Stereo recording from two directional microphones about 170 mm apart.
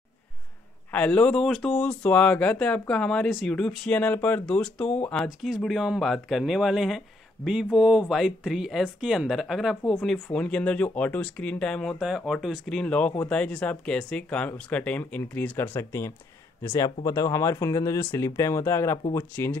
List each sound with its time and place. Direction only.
0.9 s speech: 10° left (ahead or behind)